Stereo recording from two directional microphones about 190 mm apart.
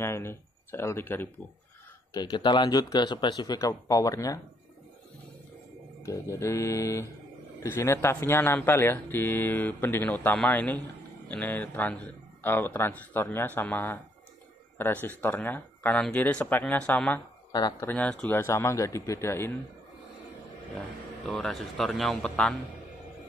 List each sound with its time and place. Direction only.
0.0 s speech: 15° left (ahead or behind)
2.1 s a man's voice: 20° left (ahead or behind)
6.0 s speech: 15° left (ahead or behind)
17.5 s speech: 20° left (ahead or behind)
17.8 s speech: 5° left (ahead or behind)
21.3 s speech: centre (ahead or behind)